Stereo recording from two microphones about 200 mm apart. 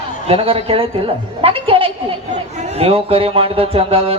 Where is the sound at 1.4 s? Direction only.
25° right (ahead or behind).